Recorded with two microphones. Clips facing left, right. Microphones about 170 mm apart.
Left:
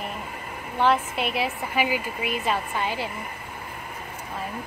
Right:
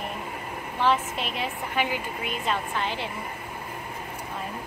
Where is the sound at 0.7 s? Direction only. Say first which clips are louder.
Left 3 dB; 5° left (ahead or behind).